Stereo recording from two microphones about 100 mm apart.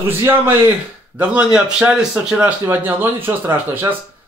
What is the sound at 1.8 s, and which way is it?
Speech, 5° right (ahead or behind).